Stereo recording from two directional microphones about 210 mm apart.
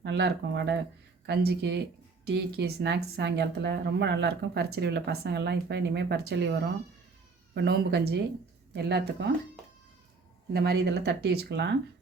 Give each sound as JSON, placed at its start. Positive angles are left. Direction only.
{"t": 0.0, "sound": "speech", "side_deg": -55}
{"t": 10.5, "sound": "speech", "side_deg": -50}